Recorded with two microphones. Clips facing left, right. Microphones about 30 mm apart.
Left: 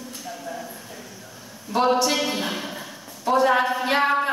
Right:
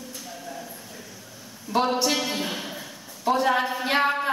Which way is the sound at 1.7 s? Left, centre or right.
Left.